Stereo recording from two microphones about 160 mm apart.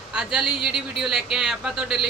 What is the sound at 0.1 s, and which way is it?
A man's voice, 5° right (ahead or behind).